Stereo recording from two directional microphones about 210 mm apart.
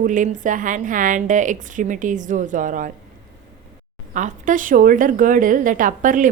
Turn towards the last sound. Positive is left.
turn(degrees=-40)  # may be behind; listen again after turning